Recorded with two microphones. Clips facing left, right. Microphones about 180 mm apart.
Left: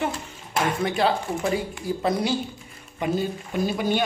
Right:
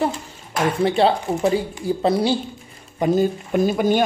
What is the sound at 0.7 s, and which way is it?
A man's voice, 30° right (ahead or behind).